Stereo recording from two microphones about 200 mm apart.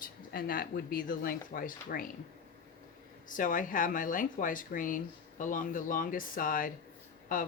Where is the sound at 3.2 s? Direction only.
40° left (ahead or behind).